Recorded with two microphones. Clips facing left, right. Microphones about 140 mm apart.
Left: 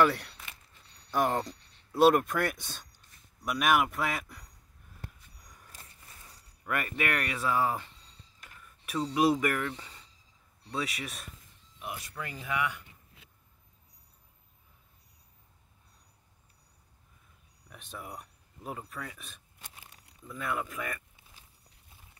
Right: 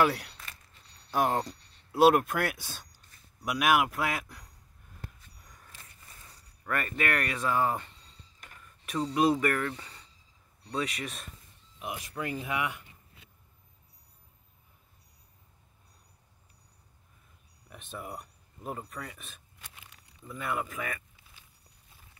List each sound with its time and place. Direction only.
0.0 s speech: 5° right (ahead or behind)
5.7 s a sound: 40° left (ahead or behind)
6.6 s speech: 10° left (ahead or behind)
11.8 s speech: 15° right (ahead or behind)
17.6 s speech: centre (ahead or behind)
19.6 s a sound: 35° left (ahead or behind)
20.2 s speech: centre (ahead or behind)